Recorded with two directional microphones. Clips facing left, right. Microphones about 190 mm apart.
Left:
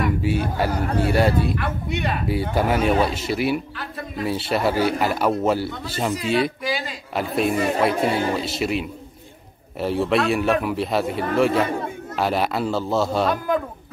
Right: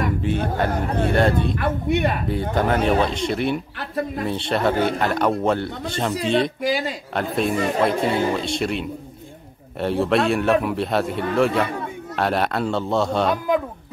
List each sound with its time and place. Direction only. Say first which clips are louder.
0.2 s a man's voice: even; 5° left (ahead or behind)
1.6 s speech: right 5 dB; 55° right (ahead or behind)
2.5 s a man's voice: right 1 dB; 10° left (ahead or behind)